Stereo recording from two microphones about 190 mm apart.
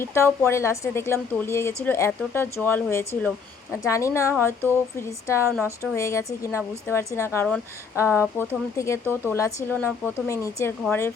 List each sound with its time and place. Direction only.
0.0 s a woman's voice: 15° left (ahead or behind)
5.4 s a woman's voice: 10° right (ahead or behind)
5.8 s a woman's voice: 15° left (ahead or behind)
10.9 s speech: centre (ahead or behind)